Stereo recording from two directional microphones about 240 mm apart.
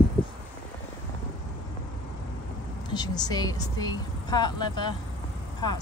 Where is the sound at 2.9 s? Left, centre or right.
Centre.